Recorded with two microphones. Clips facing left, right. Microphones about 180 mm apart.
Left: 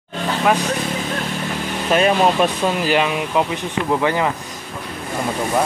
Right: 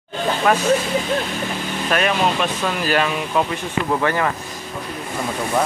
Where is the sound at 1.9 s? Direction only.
25° left (ahead or behind).